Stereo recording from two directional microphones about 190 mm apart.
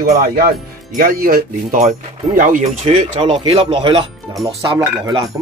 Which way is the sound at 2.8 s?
30° right (ahead or behind).